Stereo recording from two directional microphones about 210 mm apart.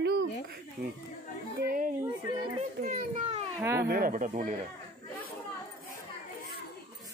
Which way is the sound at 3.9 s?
45° right (ahead or behind).